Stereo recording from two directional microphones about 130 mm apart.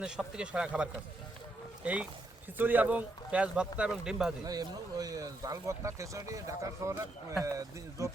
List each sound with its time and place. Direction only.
0.0 s speech: 5° right (ahead or behind)
4.4 s speech: 30° right (ahead or behind)